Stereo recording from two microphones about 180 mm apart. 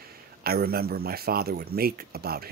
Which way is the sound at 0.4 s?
55° right (ahead or behind).